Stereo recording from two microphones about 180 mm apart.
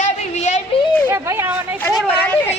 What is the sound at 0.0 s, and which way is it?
Yodeling, 40° left (ahead or behind).